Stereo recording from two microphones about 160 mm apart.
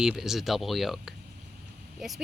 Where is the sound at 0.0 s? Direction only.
5° right (ahead or behind).